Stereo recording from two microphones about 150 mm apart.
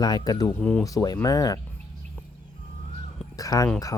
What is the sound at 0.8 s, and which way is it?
Speech, 25° left (ahead or behind).